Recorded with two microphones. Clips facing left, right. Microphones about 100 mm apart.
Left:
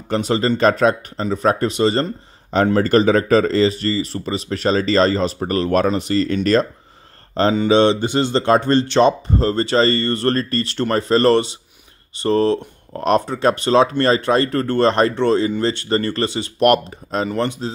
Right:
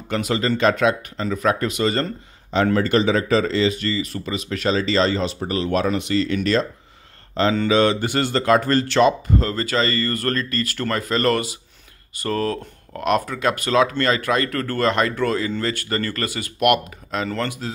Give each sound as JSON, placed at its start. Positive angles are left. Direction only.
{"t": 0.1, "sound": "speech", "side_deg": 30}
{"t": 5.9, "sound": "speech", "side_deg": 35}
{"t": 7.6, "sound": "speech", "side_deg": 25}
{"t": 17.3, "sound": "speech", "side_deg": 25}